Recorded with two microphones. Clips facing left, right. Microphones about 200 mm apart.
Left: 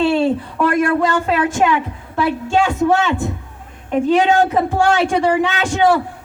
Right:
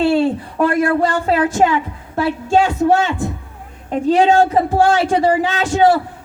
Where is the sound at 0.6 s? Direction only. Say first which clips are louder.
Right 1 dB; 40° right (ahead or behind).